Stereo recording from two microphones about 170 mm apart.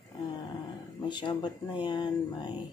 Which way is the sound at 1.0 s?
25° left (ahead or behind).